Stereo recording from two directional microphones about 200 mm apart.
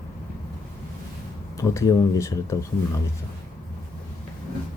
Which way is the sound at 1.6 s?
15° left (ahead or behind).